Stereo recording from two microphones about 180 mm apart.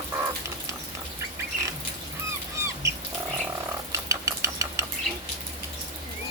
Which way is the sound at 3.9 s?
15° right (ahead or behind).